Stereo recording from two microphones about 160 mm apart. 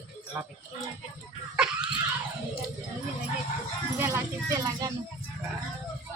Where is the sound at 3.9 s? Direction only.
15° right (ahead or behind).